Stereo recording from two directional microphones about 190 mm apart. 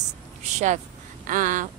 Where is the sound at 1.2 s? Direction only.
45° right (ahead or behind).